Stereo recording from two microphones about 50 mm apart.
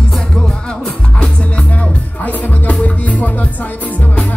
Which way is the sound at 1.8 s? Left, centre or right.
Left.